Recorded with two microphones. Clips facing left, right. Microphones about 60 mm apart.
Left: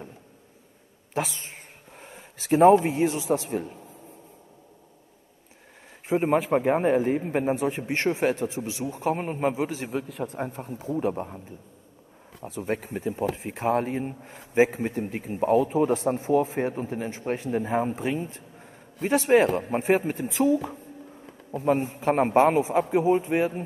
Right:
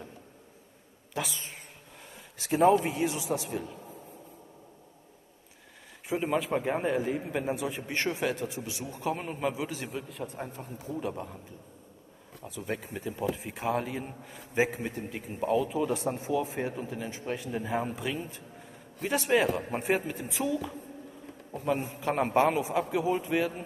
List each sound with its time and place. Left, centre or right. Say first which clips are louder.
1.1 s speech: left 5 dB; left
2.0 s a sound: left 5 dB; left
2.7 s a man's voice: left 6 dB; left
6.0 s a man's voice: left 6 dB; left
9.8 s a man's voice: left 7 dB; left
12.4 s a man's voice: left 6 dB; left
20.2 s a man's voice: left 11 dB; left
21.8 s a man's voice: left 6 dB; left